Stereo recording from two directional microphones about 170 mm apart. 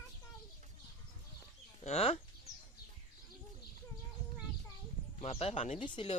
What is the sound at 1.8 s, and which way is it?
Speech, 35° left (ahead or behind).